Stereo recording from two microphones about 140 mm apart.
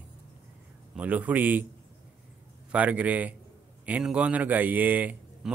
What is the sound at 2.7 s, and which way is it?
A man's voice, 10° right (ahead or behind).